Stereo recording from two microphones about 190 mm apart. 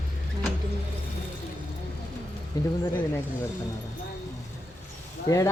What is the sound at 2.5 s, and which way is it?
Speech, 20° left (ahead or behind).